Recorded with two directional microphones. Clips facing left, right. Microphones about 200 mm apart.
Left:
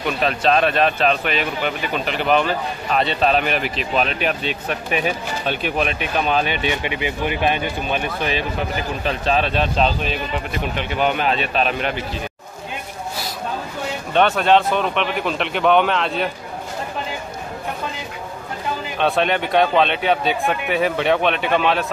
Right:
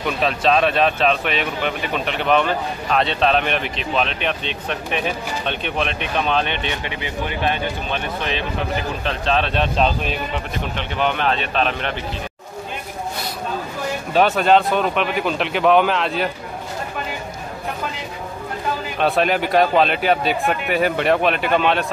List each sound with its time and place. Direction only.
0.0 s speech: centre (ahead or behind)
10.8 s speech: 10° left (ahead or behind)
14.1 s speech: centre (ahead or behind)
18.9 s speech: centre (ahead or behind)